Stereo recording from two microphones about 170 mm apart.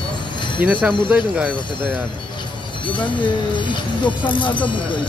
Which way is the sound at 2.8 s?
30° left (ahead or behind).